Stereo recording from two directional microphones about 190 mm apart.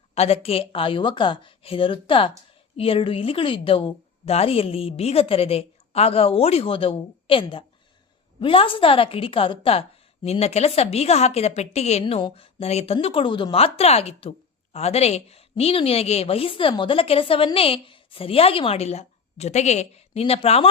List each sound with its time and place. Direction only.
0.1 s a woman's voice: 35° left (ahead or behind)